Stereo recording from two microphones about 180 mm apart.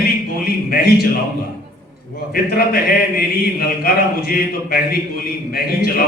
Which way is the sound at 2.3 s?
55° left (ahead or behind).